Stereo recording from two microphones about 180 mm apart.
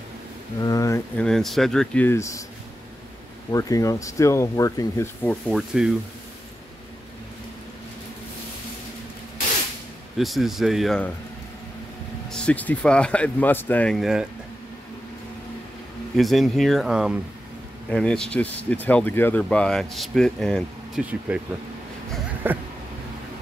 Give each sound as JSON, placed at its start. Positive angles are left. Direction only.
{"t": 0.7, "sound": "speech", "side_deg": 20}
{"t": 3.5, "sound": "speech", "side_deg": 20}
{"t": 10.1, "sound": "speech", "side_deg": 0}
{"t": 12.3, "sound": "speech", "side_deg": 5}
{"t": 16.2, "sound": "speech", "side_deg": 0}
{"t": 22.4, "sound": "a sound", "side_deg": -10}